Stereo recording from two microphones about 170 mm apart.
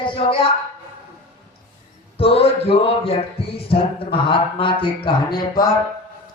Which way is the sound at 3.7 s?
30° left (ahead or behind).